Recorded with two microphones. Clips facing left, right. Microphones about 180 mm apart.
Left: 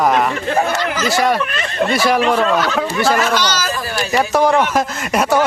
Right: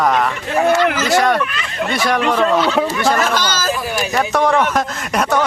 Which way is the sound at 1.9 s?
5° left (ahead or behind).